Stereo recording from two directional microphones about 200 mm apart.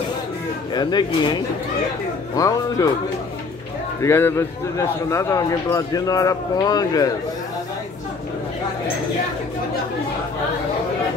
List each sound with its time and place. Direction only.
0.7 s a man's voice: 20° left (ahead or behind)
4.0 s a man's voice: 10° left (ahead or behind)